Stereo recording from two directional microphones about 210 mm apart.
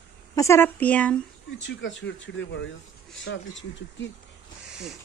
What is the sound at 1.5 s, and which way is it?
Speech, 60° left (ahead or behind).